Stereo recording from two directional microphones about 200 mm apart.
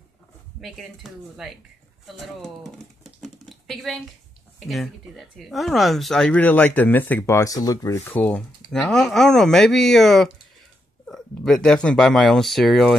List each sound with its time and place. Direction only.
0.6 s speech: centre (ahead or behind)
3.2 s typing: centre (ahead or behind)
4.6 s speech: centre (ahead or behind)